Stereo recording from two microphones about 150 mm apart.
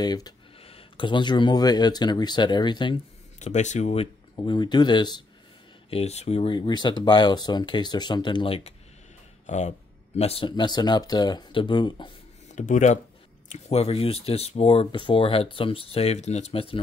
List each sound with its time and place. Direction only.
0.0 s speech: 25° left (ahead or behind)
0.6 s speech: 40° left (ahead or behind)
3.3 s speech: 50° left (ahead or behind)
4.4 s speech: 30° left (ahead or behind)
5.9 s speech: 45° left (ahead or behind)
9.5 s speech: 50° left (ahead or behind); by 12.1 s 30° left (ahead or behind)
12.5 s speech: 55° left (ahead or behind)
13.5 s speech: 40° left (ahead or behind)